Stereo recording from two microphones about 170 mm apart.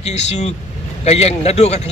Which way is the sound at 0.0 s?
40° left (ahead or behind).